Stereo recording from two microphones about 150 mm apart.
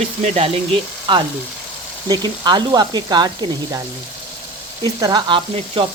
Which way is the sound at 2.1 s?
30° right (ahead or behind).